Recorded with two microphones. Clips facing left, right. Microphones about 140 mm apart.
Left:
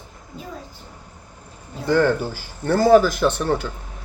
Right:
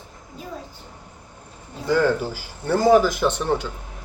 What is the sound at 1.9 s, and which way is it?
Speech, 10° right (ahead or behind).